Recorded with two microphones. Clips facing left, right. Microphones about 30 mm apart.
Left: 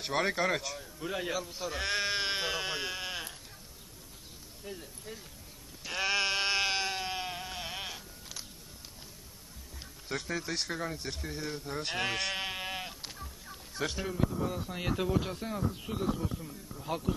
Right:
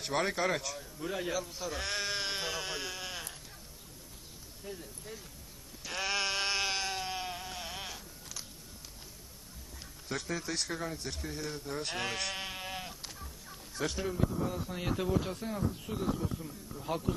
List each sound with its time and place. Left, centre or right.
0.0 s a man's voice: centre
4.6 s speech: centre
5.9 s sheep: centre
10.1 s speech: centre
16.0 s a man's voice: centre